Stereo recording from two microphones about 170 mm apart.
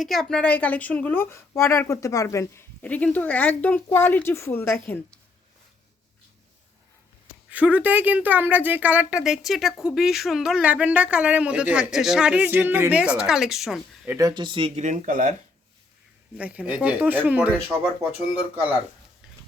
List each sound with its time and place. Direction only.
0.0 s a woman's voice: centre (ahead or behind)
7.5 s a woman's voice: 10° right (ahead or behind)
14.1 s speech: 20° right (ahead or behind)
14.8 s speech: 50° right (ahead or behind)
16.4 s a woman's voice: 10° right (ahead or behind)